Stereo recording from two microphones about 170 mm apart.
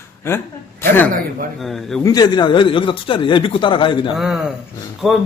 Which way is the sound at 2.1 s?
25° left (ahead or behind).